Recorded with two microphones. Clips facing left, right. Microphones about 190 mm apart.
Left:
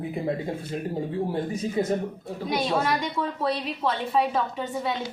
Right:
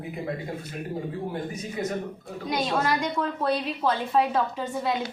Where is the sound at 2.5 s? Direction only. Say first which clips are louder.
Left 1 dB; centre (ahead or behind).